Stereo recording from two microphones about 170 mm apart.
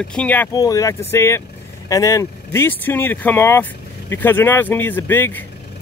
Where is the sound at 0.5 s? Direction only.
20° left (ahead or behind).